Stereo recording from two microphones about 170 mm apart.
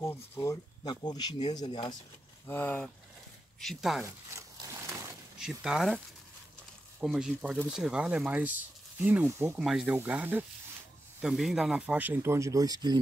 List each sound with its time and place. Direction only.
0.0 s speech: 15° left (ahead or behind)
2.4 s speech: 10° left (ahead or behind)
4.0 s a sound: 15° right (ahead or behind)
5.4 s speech: 5° right (ahead or behind); by 12.9 s 25° right (ahead or behind)